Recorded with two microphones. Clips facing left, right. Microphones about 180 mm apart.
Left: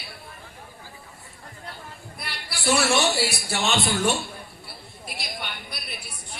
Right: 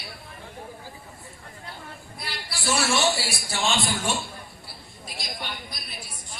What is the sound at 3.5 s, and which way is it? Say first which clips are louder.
Speech: right 1 dB; 60° left (ahead or behind).